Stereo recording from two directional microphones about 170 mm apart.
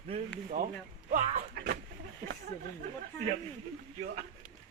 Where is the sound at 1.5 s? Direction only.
65° right (ahead or behind).